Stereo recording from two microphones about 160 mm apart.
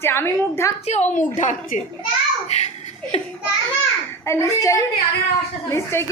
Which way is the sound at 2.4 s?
45° left (ahead or behind).